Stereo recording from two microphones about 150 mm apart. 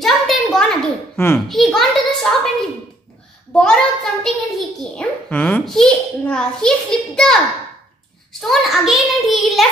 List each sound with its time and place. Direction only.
0.0 s a sound: centre (ahead or behind)
1.1 s a child's voice: 15° left (ahead or behind)
1.5 s a child's voice: centre (ahead or behind)
3.5 s a child's voice: 5° left (ahead or behind)